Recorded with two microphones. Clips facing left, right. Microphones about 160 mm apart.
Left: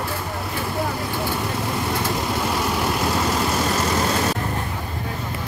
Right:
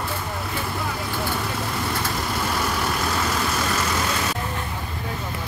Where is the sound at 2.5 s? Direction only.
20° left (ahead or behind).